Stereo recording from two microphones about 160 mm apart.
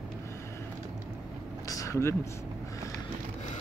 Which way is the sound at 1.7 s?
20° left (ahead or behind).